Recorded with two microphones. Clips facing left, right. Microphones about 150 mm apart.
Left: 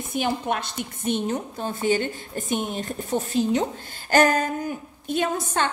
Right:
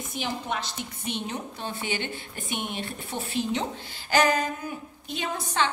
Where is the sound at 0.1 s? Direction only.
55° left (ahead or behind).